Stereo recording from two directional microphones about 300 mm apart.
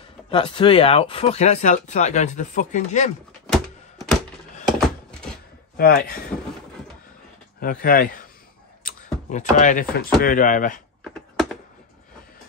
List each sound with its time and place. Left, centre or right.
0.3 s speech: centre
3.5 s a sound: centre
5.8 s speech: left
7.6 s speech: left
8.8 s a sound: left
10.2 s speech: left